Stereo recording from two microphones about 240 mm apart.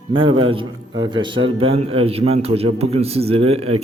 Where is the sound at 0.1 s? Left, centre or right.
Right.